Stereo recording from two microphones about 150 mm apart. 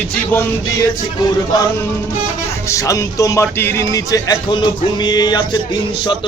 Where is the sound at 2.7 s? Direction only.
20° left (ahead or behind).